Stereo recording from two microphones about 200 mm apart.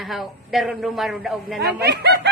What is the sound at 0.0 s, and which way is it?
A man's voice, centre (ahead or behind).